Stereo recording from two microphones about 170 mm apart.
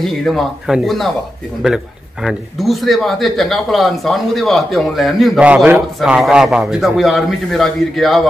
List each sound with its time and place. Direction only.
0.0 s speech: centre (ahead or behind)
2.2 s speech: centre (ahead or behind)